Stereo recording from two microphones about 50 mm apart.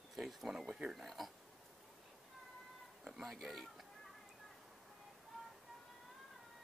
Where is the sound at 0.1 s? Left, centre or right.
Centre.